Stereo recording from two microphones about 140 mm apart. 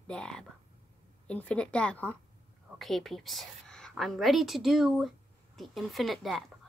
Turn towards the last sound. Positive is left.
turn(degrees=0)  # may be behind; listen again after turning